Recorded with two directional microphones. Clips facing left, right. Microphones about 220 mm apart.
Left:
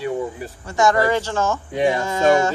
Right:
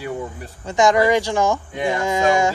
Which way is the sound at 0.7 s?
15° right (ahead or behind).